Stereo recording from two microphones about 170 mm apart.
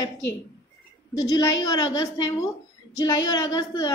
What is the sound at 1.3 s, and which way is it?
A woman's voice, 20° left (ahead or behind).